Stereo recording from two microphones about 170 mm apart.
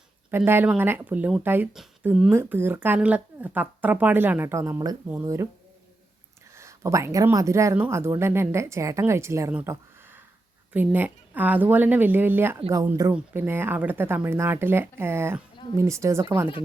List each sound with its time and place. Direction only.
0.3 s speech: 10° right (ahead or behind)
6.6 s speech: 15° right (ahead or behind)